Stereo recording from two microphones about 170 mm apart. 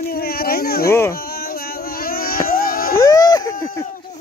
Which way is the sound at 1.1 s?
65° left (ahead or behind).